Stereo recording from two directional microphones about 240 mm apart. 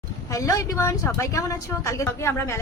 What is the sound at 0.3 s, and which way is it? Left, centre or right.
A woman's voice, centre.